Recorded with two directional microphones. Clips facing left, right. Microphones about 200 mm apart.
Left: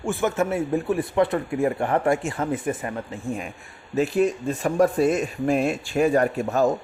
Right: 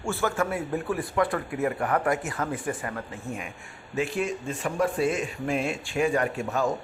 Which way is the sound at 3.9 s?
40° left (ahead or behind).